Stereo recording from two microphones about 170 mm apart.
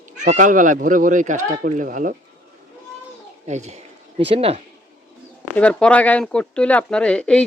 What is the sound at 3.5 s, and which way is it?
Speech, 40° right (ahead or behind).